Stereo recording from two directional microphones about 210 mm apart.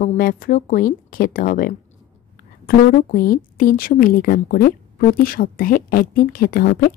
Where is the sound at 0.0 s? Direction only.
40° left (ahead or behind).